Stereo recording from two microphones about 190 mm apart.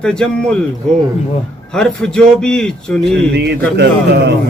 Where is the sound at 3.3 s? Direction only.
65° right (ahead or behind).